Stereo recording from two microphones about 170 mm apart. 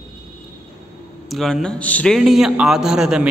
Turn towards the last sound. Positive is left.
turn(degrees=-5)  # may be behind; listen again after turning